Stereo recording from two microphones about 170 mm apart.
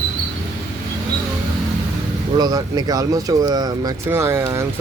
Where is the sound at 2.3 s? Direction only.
20° right (ahead or behind).